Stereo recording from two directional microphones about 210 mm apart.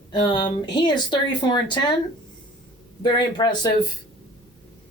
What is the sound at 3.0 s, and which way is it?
Speech, 20° left (ahead or behind).